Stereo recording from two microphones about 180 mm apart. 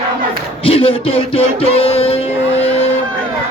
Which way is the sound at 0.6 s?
30° left (ahead or behind).